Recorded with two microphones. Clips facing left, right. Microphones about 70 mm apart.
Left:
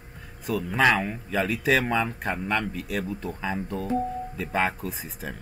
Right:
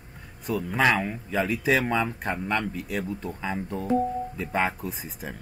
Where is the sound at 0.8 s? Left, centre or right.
Centre.